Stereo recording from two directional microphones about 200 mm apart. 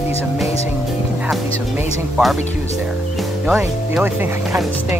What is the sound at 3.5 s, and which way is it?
Speech, 5° right (ahead or behind).